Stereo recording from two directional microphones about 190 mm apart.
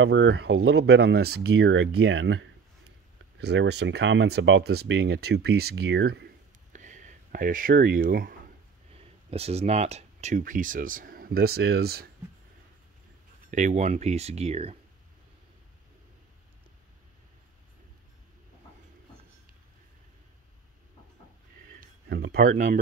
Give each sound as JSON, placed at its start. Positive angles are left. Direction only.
{"t": 0.0, "sound": "speech", "side_deg": -65}
{"t": 6.7, "sound": "a sound", "side_deg": -40}
{"t": 8.9, "sound": "speech", "side_deg": -30}
{"t": 13.5, "sound": "speech", "side_deg": -40}
{"t": 21.7, "sound": "speech", "side_deg": -55}